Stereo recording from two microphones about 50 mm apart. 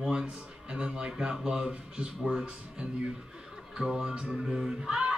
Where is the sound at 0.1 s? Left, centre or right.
Centre.